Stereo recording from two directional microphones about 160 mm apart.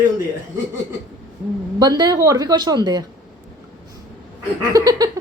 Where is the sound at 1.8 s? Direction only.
25° right (ahead or behind).